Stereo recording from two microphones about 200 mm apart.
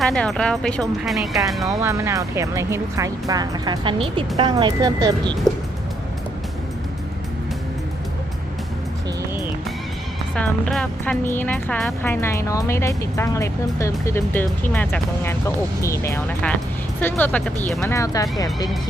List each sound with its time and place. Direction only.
0.0 s speech: centre (ahead or behind)
1.6 s speech: 15° right (ahead or behind)
10.3 s speech: 5° left (ahead or behind)
17.9 s speech: 15° left (ahead or behind)